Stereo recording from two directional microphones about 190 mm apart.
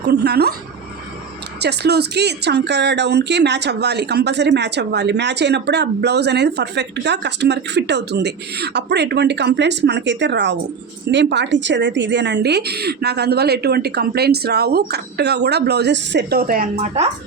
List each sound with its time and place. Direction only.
0.0 s speech: 60° right (ahead or behind)
1.6 s speech: 60° right (ahead or behind)
16.7 s a woman's voice: 35° right (ahead or behind)